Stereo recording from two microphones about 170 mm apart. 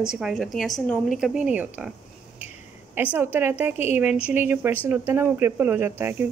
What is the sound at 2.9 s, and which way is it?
A woman's voice, 10° right (ahead or behind).